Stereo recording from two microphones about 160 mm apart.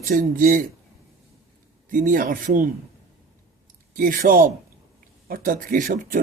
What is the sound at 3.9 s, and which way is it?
Speech, 60° right (ahead or behind).